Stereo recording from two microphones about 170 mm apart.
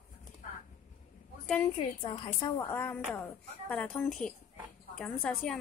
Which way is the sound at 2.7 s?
10° left (ahead or behind).